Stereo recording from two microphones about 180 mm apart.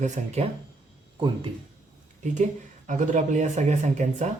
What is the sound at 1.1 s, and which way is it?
Speech, 25° right (ahead or behind).